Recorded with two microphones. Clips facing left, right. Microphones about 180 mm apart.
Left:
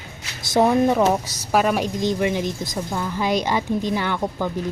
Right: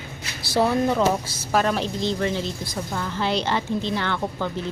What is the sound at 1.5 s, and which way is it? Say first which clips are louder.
Speech: left 3 dB; 10° left (ahead or behind).